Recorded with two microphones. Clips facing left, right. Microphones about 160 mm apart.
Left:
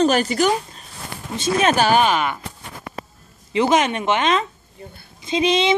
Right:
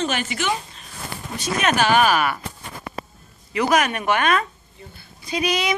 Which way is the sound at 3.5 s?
25° left (ahead or behind).